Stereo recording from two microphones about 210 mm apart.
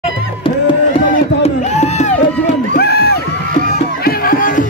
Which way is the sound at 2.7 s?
50° left (ahead or behind).